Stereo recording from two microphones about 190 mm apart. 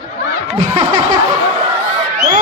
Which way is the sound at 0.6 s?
25° right (ahead or behind).